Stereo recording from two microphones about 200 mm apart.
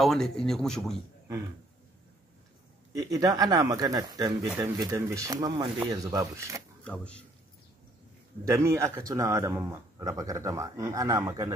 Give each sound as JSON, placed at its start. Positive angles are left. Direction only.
{"t": 0.0, "sound": "speech", "side_deg": 0}
{"t": 2.9, "sound": "a man's voice", "side_deg": -20}
{"t": 6.8, "sound": "speech", "side_deg": 5}
{"t": 8.5, "sound": "a man's voice", "side_deg": -15}